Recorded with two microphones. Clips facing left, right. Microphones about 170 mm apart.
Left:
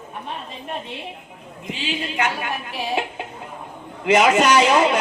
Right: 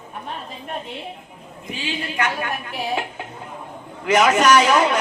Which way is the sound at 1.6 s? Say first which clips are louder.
Left 1 dB; 20° left (ahead or behind).